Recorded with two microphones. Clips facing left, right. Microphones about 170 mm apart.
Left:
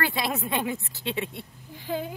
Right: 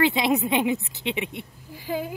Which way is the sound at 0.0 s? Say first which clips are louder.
Right 7 dB; 20° right (ahead or behind).